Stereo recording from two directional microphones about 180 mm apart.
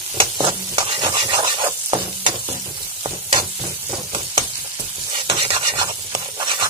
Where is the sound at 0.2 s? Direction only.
25° right (ahead or behind).